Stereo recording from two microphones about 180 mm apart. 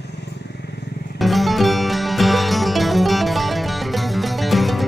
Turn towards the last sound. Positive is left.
turn(degrees=0)  # may be behind; listen again after turning